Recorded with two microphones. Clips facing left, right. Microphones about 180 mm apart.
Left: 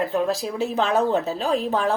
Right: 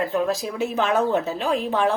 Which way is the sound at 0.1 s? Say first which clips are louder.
Even; 35° left (ahead or behind).